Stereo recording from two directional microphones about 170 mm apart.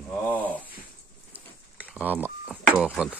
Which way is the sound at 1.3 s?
10° right (ahead or behind).